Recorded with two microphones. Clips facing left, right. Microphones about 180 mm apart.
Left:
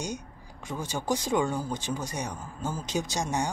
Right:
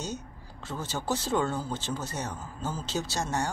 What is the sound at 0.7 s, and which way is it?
Speech, 15° left (ahead or behind).